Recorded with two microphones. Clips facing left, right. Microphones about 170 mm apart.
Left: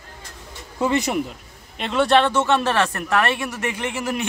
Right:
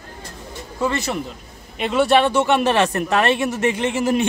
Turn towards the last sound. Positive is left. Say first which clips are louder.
# right 6 dB
turn(degrees=-25)  # may be behind; listen again after turning